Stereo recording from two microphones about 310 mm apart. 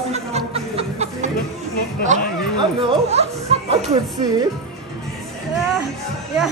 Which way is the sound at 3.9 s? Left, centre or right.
Centre.